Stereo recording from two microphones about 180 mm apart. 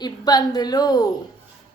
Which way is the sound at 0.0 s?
20° left (ahead or behind).